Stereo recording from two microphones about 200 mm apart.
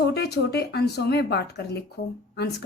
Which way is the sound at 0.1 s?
55° left (ahead or behind).